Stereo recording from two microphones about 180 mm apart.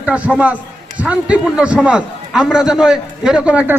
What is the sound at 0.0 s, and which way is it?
A man's voice, 5° right (ahead or behind).